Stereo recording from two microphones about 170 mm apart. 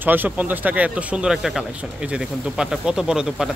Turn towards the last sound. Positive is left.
turn(degrees=-5)  # may be behind; listen again after turning